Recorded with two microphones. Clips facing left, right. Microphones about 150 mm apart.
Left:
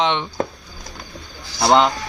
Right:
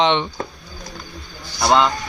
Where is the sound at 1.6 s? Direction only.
25° left (ahead or behind).